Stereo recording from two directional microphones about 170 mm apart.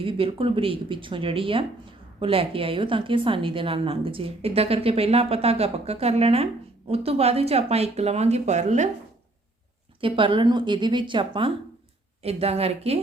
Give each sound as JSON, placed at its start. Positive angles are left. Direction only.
{"t": 0.0, "sound": "a woman's voice", "side_deg": -30}
{"t": 10.0, "sound": "a woman's voice", "side_deg": -30}